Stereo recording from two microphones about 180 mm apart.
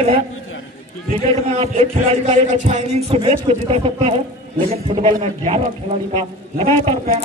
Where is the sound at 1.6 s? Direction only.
35° right (ahead or behind).